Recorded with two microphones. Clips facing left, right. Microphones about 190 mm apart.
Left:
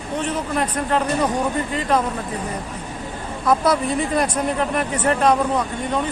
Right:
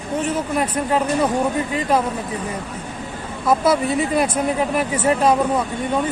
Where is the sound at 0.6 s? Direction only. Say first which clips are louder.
Even; 10° right (ahead or behind).